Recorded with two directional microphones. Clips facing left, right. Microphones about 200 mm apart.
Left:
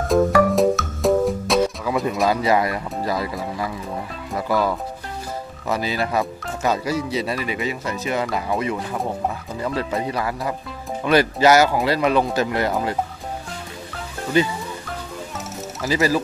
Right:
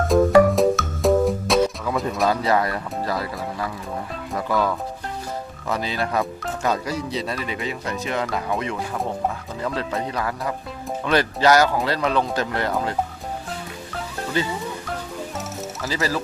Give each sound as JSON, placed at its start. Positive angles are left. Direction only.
{"t": 0.6, "sound": "music", "side_deg": 0}
{"t": 4.3, "sound": "speech", "side_deg": 5}
{"t": 14.3, "sound": "speech", "side_deg": 15}
{"t": 15.8, "sound": "speech", "side_deg": 15}